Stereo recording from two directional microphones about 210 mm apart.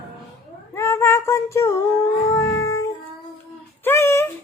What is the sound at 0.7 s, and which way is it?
Child singing, 10° left (ahead or behind).